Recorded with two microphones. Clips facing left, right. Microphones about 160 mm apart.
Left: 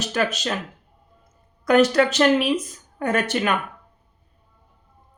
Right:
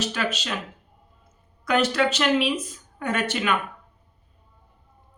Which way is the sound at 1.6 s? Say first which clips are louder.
Left 5 dB; 45° left (ahead or behind).